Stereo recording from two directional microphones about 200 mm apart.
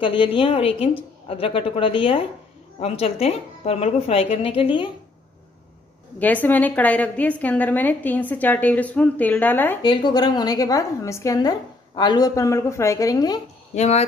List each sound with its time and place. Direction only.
0.0 s a woman's voice: 25° left (ahead or behind)
6.1 s a woman's voice: 10° left (ahead or behind)
9.8 s a woman's voice: 20° left (ahead or behind)
13.7 s speech: 30° left (ahead or behind)